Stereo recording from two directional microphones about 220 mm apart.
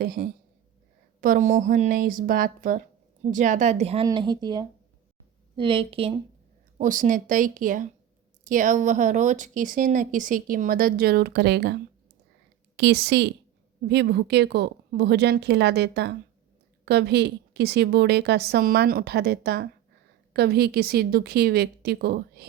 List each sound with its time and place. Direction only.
0.0 s a woman's voice: 45° right (ahead or behind); by 6.1 s 25° right (ahead or behind)
6.7 s a woman's voice: 35° right (ahead or behind)